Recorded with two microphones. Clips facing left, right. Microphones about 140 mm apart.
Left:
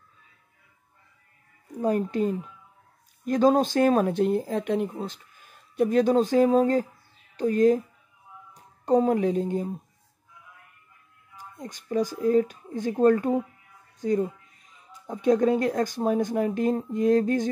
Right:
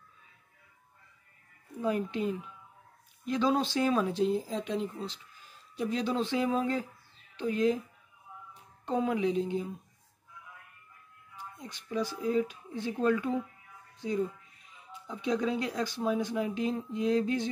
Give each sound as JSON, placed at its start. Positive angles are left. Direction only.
{"t": 1.8, "sound": "speech", "side_deg": 45}
{"t": 11.3, "sound": "speech", "side_deg": 45}